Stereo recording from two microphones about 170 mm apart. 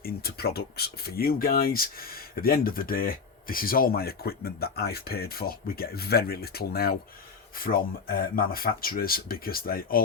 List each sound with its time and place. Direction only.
0.0 s speech: 65° left (ahead or behind)